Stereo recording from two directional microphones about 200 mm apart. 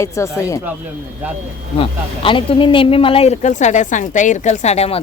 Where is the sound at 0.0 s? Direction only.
15° left (ahead or behind).